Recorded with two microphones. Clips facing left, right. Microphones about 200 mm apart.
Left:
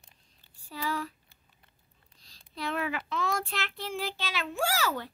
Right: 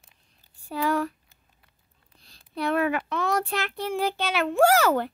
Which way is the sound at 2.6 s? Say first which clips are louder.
Right 8 dB; 55° right (ahead or behind).